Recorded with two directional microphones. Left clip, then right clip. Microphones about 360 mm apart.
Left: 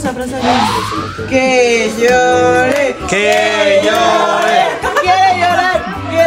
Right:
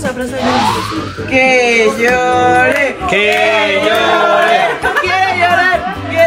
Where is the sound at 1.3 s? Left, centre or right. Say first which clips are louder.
Right 1 dB; centre.